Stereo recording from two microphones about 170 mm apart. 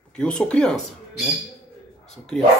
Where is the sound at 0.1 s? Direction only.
5° left (ahead or behind).